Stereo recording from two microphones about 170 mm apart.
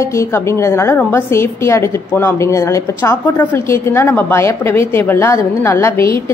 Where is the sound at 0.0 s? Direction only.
15° left (ahead or behind).